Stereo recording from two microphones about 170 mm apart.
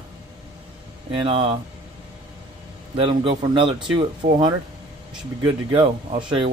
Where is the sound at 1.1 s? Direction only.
30° right (ahead or behind).